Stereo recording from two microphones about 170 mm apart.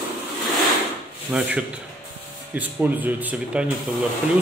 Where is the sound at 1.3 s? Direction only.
5° right (ahead or behind).